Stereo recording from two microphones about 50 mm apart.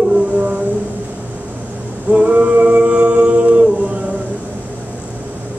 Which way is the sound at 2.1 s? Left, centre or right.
Right.